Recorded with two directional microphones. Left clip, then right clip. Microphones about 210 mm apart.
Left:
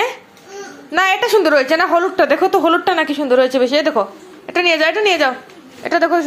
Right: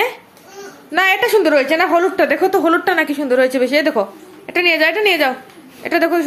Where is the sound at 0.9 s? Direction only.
Centre (ahead or behind).